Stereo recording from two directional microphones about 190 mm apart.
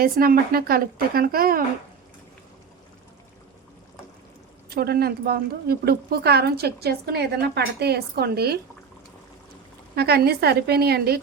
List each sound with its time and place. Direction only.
0.0 s a woman's voice: 50° right (ahead or behind)
4.7 s speech: 55° right (ahead or behind)
9.9 s speech: 55° right (ahead or behind)